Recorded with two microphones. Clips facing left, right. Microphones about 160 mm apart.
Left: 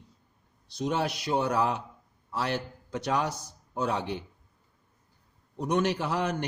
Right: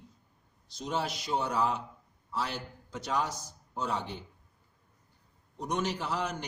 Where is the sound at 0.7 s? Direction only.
60° left (ahead or behind).